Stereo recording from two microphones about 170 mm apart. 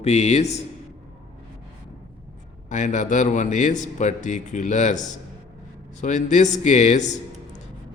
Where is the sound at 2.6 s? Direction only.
45° left (ahead or behind).